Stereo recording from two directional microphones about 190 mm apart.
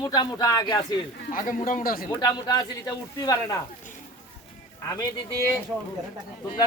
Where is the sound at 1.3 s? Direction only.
45° left (ahead or behind).